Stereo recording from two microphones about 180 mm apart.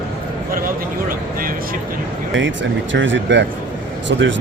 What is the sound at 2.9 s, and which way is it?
Speech, 90° right.